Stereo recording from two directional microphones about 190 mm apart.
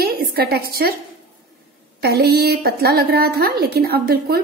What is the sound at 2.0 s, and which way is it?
A woman's voice, 55° right (ahead or behind).